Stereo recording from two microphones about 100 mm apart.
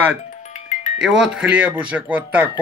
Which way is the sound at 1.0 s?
5° right (ahead or behind).